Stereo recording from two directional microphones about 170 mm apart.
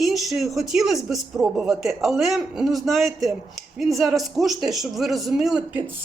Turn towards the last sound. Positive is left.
turn(degrees=0)  # may be behind; listen again after turning